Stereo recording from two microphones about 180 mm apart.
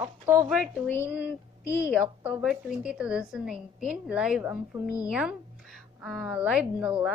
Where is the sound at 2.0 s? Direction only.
10° right (ahead or behind).